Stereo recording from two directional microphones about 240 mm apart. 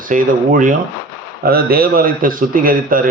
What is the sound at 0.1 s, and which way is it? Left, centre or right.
A man's voice, right.